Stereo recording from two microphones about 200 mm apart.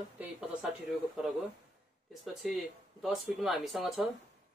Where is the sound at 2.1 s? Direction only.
Centre (ahead or behind).